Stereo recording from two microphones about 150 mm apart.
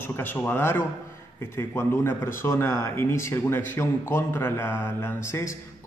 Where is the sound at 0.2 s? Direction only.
15° left (ahead or behind).